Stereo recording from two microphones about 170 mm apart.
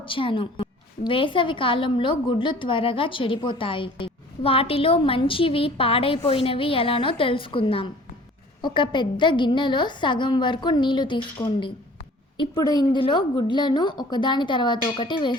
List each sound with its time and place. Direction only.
0.0 s a woman's voice: 30° left (ahead or behind)
12.4 s a woman's voice: 25° left (ahead or behind)